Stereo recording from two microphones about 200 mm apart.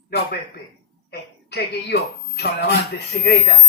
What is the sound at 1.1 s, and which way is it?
Speech, 55° left (ahead or behind).